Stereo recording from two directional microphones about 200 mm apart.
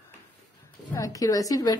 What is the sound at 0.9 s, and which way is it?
Speech, 15° left (ahead or behind).